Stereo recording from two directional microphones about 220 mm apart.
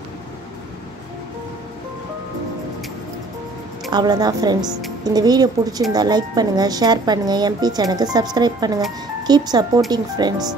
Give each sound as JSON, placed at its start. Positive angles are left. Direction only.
{"t": 3.9, "sound": "a woman's voice", "side_deg": -20}